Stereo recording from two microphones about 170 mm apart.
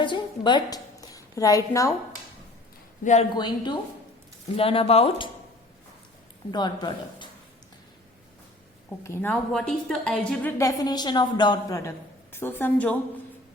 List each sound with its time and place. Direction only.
0.0 s a sound: 25° left (ahead or behind)
3.0 s speech: 45° left (ahead or behind)
3.3 s a woman's voice: 25° left (ahead or behind)
6.5 s a woman's voice: 25° left (ahead or behind)
9.0 s a woman's voice: 15° left (ahead or behind)
9.5 s a woman's voice: 5° left (ahead or behind)
10.6 s a woman's voice: 20° left (ahead or behind)